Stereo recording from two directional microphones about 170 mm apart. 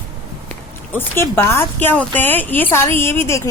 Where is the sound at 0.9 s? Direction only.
15° left (ahead or behind).